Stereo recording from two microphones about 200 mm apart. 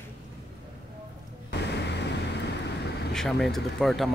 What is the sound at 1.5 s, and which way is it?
Music, 55° left (ahead or behind).